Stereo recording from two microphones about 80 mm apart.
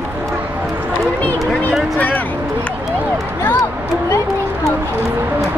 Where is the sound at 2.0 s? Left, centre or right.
Left.